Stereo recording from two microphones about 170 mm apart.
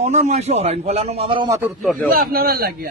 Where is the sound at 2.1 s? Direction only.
60° right (ahead or behind).